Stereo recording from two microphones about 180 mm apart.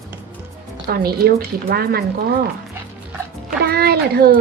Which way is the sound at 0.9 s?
60° right (ahead or behind).